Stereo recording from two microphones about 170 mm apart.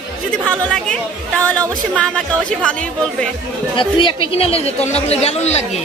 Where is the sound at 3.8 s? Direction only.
30° left (ahead or behind).